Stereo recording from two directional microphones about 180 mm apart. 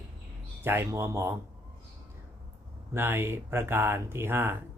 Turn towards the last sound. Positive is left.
turn(degrees=-10)  # may be behind; listen again after turning